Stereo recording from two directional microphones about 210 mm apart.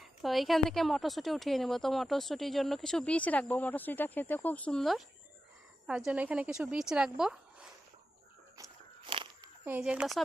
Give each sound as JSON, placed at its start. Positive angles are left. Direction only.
{"t": 0.0, "sound": "a woman's voice", "side_deg": 0}
{"t": 6.1, "sound": "a woman's voice", "side_deg": -5}
{"t": 9.0, "sound": "a sound", "side_deg": -25}
{"t": 9.6, "sound": "a woman's voice", "side_deg": -5}